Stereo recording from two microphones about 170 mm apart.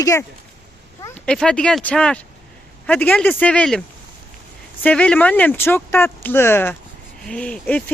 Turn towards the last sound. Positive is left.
turn(degrees=10)  # may be behind; listen again after turning